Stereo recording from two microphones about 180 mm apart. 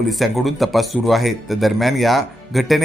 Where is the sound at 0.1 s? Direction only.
Centre (ahead or behind).